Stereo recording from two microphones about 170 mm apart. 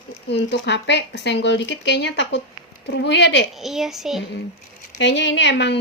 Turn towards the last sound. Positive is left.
turn(degrees=90)